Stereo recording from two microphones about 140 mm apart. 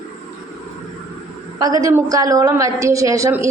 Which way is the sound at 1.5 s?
25° right (ahead or behind).